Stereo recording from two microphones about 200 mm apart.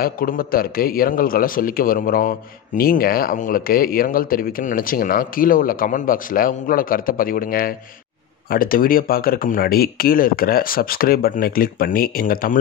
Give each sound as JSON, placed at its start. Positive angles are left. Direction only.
{"t": 0.0, "sound": "a man's voice", "side_deg": 45}